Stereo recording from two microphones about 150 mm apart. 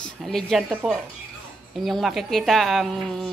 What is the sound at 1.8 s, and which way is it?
Speech, centre (ahead or behind).